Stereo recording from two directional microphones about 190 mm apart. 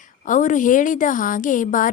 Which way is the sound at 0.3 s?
40° left (ahead or behind).